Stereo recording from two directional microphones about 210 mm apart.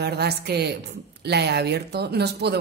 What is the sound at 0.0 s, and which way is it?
Speech, 50° right (ahead or behind).